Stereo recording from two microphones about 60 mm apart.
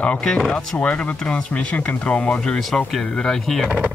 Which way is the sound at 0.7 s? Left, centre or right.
Left.